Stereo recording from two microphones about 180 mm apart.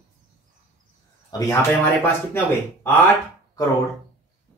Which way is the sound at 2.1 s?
15° left (ahead or behind).